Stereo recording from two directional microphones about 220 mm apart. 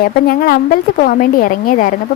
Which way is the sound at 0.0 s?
40° left (ahead or behind).